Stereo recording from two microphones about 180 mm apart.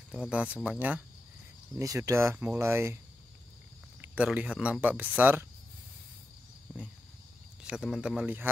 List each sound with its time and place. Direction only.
0.1 s speech: 5° right (ahead or behind)
1.8 s speech: 15° right (ahead or behind)
4.0 s speech: 10° right (ahead or behind)
7.6 s speech: 5° right (ahead or behind)